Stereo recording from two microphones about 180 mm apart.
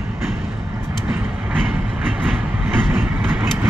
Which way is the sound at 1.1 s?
10° right (ahead or behind).